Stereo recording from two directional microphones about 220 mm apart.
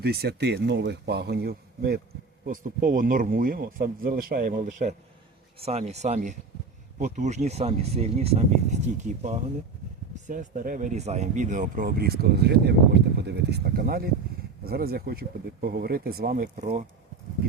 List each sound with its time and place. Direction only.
0.0 s speech: 45° right (ahead or behind)